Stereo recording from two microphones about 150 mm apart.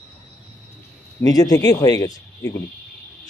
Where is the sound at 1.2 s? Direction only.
25° left (ahead or behind).